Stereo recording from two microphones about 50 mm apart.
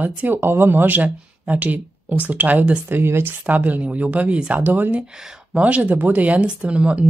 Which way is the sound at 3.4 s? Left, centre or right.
Right.